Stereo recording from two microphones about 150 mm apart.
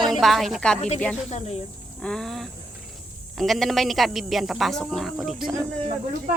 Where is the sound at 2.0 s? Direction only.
5° left (ahead or behind).